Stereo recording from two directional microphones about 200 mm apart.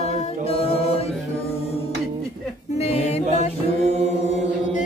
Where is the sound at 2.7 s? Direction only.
30° left (ahead or behind).